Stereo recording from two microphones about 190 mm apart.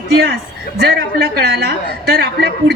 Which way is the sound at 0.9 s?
55° right (ahead or behind).